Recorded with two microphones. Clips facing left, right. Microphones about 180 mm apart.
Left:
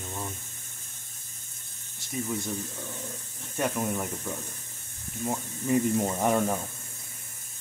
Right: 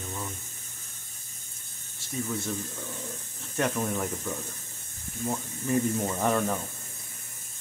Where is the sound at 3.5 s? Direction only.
10° left (ahead or behind).